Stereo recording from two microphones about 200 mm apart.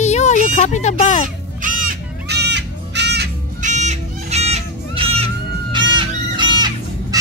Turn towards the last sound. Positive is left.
turn(degrees=-20)  # may be behind; listen again after turning